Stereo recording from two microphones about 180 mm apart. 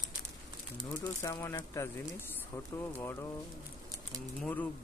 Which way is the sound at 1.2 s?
15° left (ahead or behind).